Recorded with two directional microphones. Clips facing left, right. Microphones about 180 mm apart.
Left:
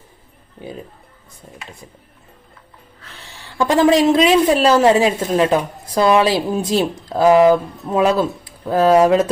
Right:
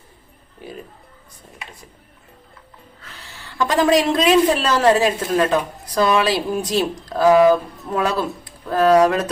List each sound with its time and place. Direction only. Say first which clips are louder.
1.4 s a woman's voice: left 3 dB; 25° left (ahead or behind)
3.7 s a woman's voice: left 4 dB; 25° left (ahead or behind)